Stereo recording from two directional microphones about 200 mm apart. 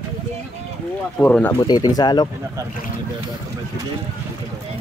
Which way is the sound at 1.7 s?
20° left (ahead or behind).